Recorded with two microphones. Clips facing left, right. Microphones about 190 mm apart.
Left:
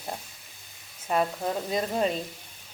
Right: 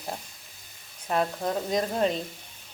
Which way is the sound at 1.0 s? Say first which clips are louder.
Even; 5° left (ahead or behind).